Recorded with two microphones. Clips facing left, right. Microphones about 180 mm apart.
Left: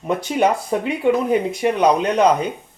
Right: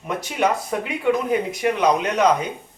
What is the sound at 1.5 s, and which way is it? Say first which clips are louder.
Speech: left 3 dB; 30° left (ahead or behind).